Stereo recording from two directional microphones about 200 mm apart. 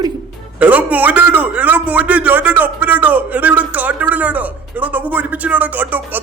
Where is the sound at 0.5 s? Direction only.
5° right (ahead or behind).